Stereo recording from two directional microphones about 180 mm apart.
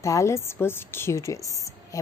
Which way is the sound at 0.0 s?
15° left (ahead or behind).